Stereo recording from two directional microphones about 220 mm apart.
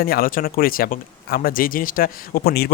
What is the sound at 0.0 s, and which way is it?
Speech, 40° left (ahead or behind).